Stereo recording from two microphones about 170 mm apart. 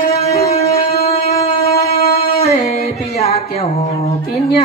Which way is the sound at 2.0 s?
65° left (ahead or behind).